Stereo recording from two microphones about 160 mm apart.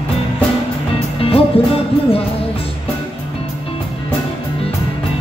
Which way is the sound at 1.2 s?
35° left (ahead or behind).